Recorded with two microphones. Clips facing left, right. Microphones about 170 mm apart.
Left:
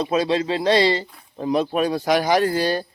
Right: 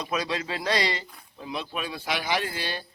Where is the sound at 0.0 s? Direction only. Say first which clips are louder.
Left 9 dB; 30° left (ahead or behind).